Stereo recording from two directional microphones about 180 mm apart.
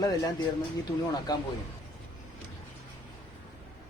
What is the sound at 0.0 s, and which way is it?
Speech, 20° left (ahead or behind).